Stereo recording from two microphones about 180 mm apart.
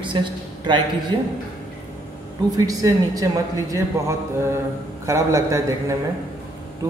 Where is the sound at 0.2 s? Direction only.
25° right (ahead or behind).